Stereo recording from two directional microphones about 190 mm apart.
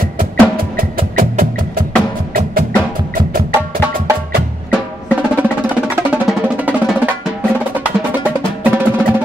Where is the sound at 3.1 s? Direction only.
50° right (ahead or behind).